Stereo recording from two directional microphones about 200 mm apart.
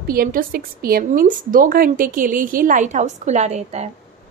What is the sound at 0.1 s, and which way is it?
A woman's voice, 45° right (ahead or behind).